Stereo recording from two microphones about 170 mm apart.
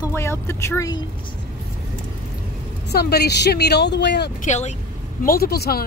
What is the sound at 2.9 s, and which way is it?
Speech, 70° left (ahead or behind).